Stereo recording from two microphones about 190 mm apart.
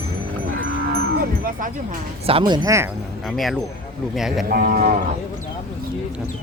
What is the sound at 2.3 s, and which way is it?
Speech, 25° right (ahead or behind).